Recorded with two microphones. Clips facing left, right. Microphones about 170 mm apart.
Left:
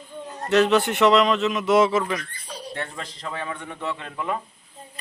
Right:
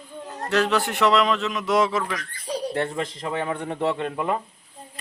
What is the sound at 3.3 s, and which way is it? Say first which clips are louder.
A man's voice: right 3 dB; 30° right (ahead or behind).